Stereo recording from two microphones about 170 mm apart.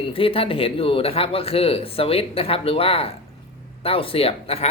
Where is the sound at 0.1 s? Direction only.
35° left (ahead or behind).